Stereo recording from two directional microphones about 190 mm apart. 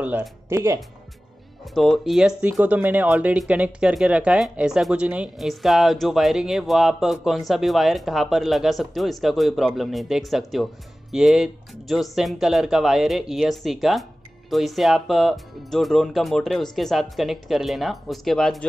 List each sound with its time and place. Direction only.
0.0 s speech: 10° right (ahead or behind)
1.7 s speech: centre (ahead or behind)